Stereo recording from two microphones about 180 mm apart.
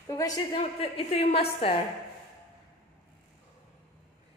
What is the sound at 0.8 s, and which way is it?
Speech, 35° left (ahead or behind).